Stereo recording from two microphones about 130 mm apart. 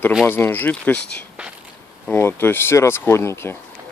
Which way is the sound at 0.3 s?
15° left (ahead or behind).